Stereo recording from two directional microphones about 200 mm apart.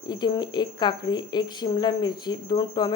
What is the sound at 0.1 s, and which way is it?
A woman's voice, 20° left (ahead or behind).